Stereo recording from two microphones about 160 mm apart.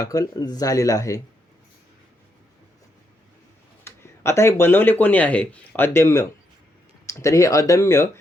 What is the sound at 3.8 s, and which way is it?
Speech, 15° left (ahead or behind).